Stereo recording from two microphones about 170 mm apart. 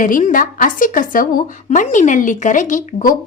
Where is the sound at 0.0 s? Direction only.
50° left (ahead or behind).